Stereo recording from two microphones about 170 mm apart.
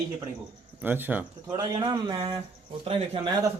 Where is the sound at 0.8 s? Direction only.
10° right (ahead or behind).